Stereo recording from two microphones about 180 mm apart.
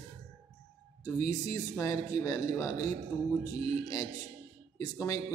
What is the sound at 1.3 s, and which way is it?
A man's voice, 15° left (ahead or behind).